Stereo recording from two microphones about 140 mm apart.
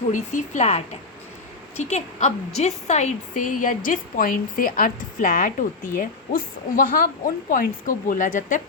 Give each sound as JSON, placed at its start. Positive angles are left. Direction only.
{"t": 0.1, "sound": "a woman's voice", "side_deg": 60}
{"t": 1.8, "sound": "a woman's voice", "side_deg": 55}